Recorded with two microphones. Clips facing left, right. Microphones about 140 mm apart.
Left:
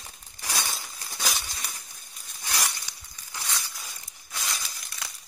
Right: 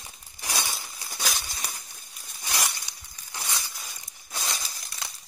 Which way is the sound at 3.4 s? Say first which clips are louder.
Right 1 dB; 20° right (ahead or behind).